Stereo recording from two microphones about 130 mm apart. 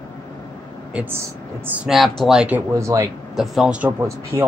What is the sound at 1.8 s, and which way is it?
Speech, centre (ahead or behind).